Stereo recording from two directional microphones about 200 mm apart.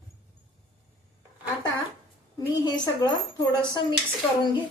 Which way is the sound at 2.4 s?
20° left (ahead or behind).